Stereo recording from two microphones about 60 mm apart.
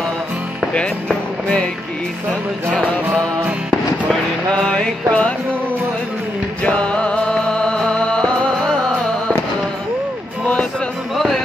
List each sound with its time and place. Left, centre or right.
0.7 s speech: centre
4.6 s music: centre
6.6 s music: centre
11.1 s a sound: centre